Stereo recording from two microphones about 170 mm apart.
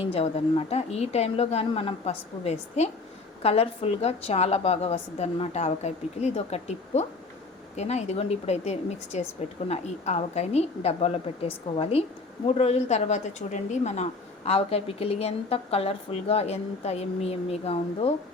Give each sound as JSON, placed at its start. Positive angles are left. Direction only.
{"t": 0.0, "sound": "speech", "side_deg": 35}